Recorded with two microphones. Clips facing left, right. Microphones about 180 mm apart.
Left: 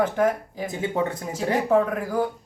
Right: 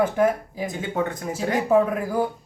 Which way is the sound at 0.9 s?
25° left (ahead or behind).